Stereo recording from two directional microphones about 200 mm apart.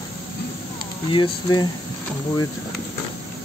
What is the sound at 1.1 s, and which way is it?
Speech, 20° left (ahead or behind).